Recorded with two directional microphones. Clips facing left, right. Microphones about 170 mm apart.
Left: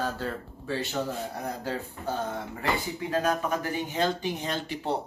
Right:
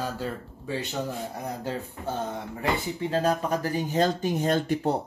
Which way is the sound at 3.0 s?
30° right (ahead or behind).